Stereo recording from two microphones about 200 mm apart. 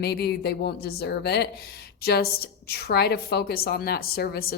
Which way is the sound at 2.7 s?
55° left (ahead or behind).